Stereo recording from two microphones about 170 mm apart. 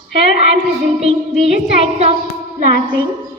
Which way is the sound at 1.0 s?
35° right (ahead or behind).